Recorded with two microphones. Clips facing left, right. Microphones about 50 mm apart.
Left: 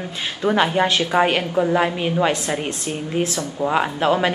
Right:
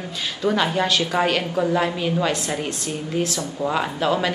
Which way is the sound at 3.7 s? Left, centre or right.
Left.